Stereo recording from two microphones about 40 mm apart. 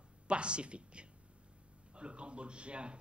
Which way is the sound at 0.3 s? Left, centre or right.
Right.